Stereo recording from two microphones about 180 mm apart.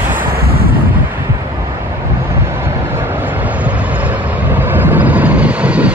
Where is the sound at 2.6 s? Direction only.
10° right (ahead or behind).